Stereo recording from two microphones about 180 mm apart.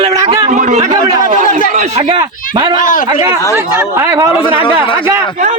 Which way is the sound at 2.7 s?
50° left (ahead or behind).